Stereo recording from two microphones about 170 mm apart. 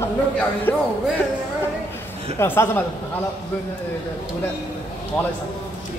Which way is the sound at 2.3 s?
15° left (ahead or behind).